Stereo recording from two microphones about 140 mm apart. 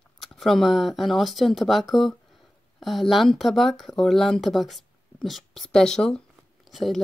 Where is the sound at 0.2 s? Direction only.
Centre (ahead or behind).